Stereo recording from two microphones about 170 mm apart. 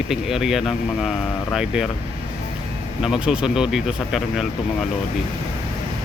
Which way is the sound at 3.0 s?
5° right (ahead or behind).